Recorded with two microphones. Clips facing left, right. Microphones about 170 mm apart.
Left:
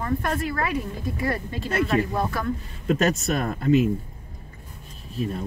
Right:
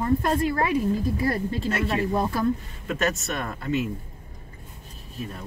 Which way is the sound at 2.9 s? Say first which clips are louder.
Left 5 dB; 35° left (ahead or behind).